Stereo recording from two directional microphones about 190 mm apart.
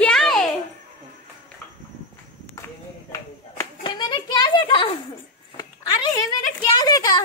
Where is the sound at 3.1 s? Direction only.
20° left (ahead or behind).